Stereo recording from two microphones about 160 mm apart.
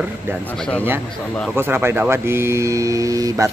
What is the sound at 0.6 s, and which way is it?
Speech, 10° left (ahead or behind).